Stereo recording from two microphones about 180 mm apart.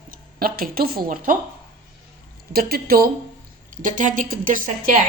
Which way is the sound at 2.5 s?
55° right (ahead or behind).